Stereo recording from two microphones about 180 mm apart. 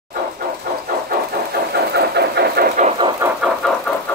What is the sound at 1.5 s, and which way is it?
Vehicle, 65° right (ahead or behind).